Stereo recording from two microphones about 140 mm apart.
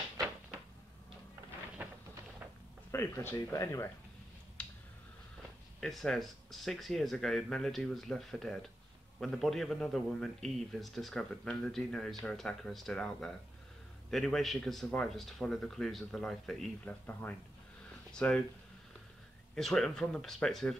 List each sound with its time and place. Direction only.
2.9 s speech: 15° left (ahead or behind)
4.6 s a sound: 10° left (ahead or behind)
5.8 s a man's voice: centre (ahead or behind)
19.5 s a man's voice: 5° left (ahead or behind)